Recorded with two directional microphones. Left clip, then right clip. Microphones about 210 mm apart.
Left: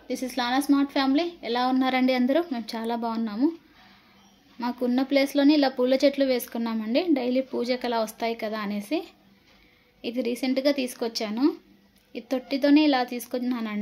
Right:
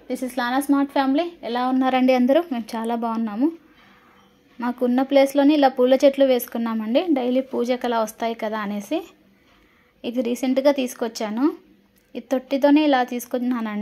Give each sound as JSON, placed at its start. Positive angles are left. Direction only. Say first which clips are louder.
{"t": 0.1, "sound": "speech", "louder": "right 3 dB", "side_deg": -5}
{"t": 4.6, "sound": "speech", "louder": "right 5 dB", "side_deg": -10}